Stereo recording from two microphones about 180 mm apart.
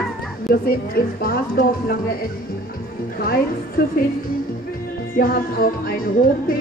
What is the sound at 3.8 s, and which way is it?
Speech, 55° left (ahead or behind).